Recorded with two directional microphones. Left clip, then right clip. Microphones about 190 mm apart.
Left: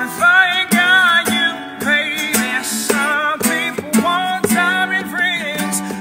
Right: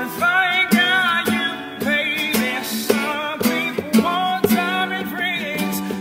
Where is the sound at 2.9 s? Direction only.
5° left (ahead or behind).